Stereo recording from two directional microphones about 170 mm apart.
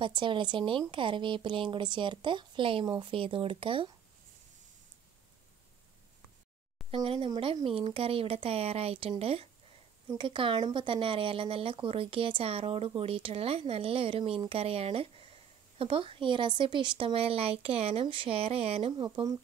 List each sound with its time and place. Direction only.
0.0 s a woman's voice: 30° right (ahead or behind)
6.9 s speech: 30° right (ahead or behind)